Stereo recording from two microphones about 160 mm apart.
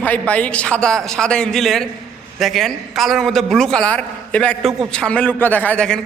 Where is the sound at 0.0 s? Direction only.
10° left (ahead or behind).